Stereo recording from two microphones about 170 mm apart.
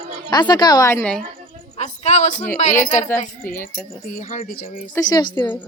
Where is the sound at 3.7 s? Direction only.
55° left (ahead or behind).